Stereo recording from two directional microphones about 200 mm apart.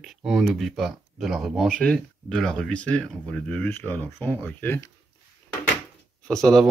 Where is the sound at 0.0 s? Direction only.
Centre (ahead or behind).